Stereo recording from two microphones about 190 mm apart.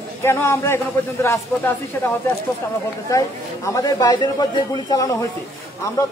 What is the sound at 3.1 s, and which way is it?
A man's voice, 15° left (ahead or behind).